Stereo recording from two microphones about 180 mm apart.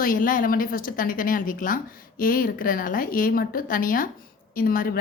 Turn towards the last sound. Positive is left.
turn(degrees=55)  # may be behind; listen again after turning